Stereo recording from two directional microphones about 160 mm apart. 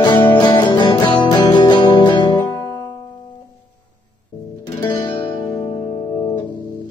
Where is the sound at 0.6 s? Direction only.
25° left (ahead or behind).